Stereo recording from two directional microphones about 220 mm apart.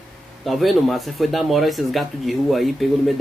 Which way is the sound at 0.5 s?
Centre (ahead or behind).